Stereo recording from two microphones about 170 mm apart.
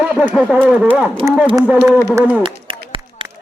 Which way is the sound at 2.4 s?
30° right (ahead or behind).